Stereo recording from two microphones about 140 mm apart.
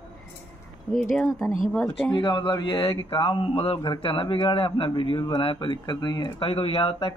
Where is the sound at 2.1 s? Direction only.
35° left (ahead or behind).